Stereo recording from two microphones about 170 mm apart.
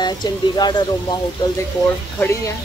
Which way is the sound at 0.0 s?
25° left (ahead or behind).